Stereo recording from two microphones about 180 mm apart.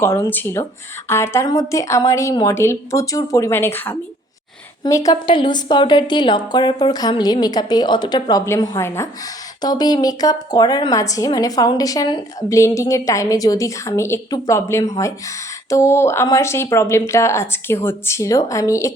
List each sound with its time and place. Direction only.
0.0 s a woman's voice: 15° left (ahead or behind)